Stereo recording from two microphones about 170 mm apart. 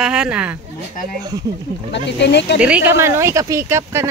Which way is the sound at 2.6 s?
5° right (ahead or behind).